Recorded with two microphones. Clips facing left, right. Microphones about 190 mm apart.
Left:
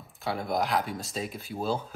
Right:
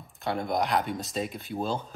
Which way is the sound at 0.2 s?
Centre (ahead or behind).